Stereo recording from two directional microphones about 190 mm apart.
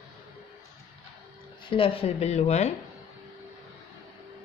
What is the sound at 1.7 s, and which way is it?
Speech, 30° left (ahead or behind).